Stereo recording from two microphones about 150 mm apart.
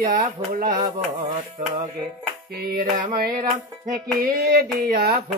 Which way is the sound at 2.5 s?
80° right.